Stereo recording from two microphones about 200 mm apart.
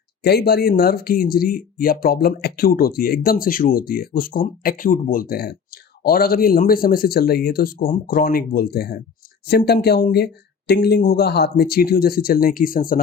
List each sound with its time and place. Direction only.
0.2 s speech: 55° left (ahead or behind)